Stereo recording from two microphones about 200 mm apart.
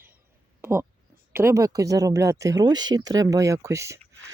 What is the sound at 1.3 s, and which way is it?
Speech, 15° right (ahead or behind).